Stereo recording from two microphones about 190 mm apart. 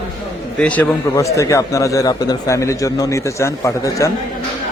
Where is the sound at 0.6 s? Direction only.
10° left (ahead or behind).